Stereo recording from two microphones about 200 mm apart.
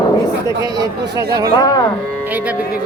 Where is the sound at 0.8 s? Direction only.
15° right (ahead or behind).